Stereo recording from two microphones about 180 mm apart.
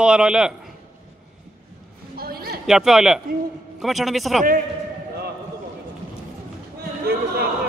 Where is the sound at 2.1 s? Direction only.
55° right (ahead or behind).